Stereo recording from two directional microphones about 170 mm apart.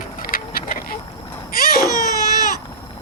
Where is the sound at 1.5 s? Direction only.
60° left (ahead or behind).